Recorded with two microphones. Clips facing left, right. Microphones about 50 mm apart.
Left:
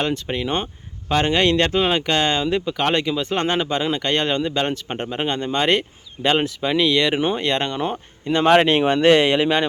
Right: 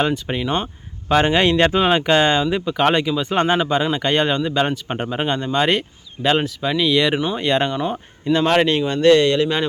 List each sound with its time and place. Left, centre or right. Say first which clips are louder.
0.0 s speech: right 2 dB; centre
0.4 s speech: right 2 dB; centre
1.0 s speech: right 2 dB; centre
8.3 s speech: left 1 dB; centre
8.9 s speech: right 3 dB; left